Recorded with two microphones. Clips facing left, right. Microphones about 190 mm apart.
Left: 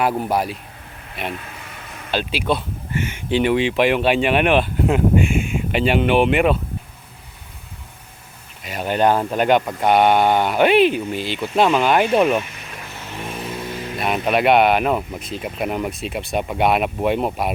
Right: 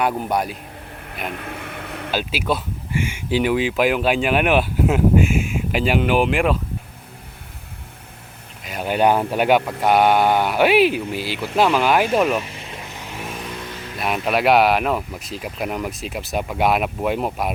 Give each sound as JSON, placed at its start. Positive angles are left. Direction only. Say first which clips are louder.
{"t": 0.0, "sound": "speech", "louder": "left 1 dB", "side_deg": 5}
{"t": 1.3, "sound": "a sound", "louder": "right 2 dB", "side_deg": -60}
{"t": 2.0, "sound": "speech", "louder": "left 2 dB", "side_deg": -5}
{"t": 8.6, "sound": "speech", "louder": "even", "side_deg": 0}
{"t": 12.5, "sound": "vehicle", "louder": "right 2 dB", "side_deg": -25}
{"t": 13.2, "sound": "vehicle", "louder": "left 4 dB", "side_deg": 5}
{"t": 14.0, "sound": "speech", "louder": "left 1 dB", "side_deg": 0}